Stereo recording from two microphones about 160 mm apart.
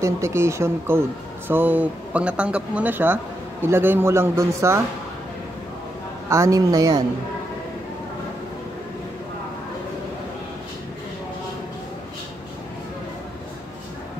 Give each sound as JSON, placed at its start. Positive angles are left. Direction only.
{"t": 0.0, "sound": "speech", "side_deg": -15}
{"t": 6.2, "sound": "a woman's voice", "side_deg": -20}